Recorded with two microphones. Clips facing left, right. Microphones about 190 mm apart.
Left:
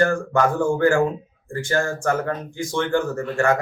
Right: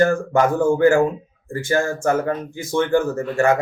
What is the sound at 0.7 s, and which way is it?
Speech, 20° right (ahead or behind).